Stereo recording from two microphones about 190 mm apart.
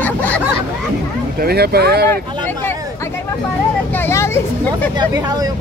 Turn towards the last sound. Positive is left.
turn(degrees=15)  # may be behind; listen again after turning